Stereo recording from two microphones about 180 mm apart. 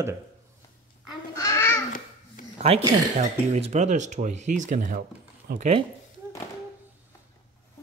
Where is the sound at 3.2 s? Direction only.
35° right (ahead or behind); by 5.6 s 55° right (ahead or behind).